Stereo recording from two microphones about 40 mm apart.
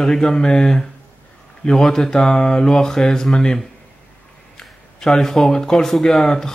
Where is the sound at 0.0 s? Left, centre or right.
Centre.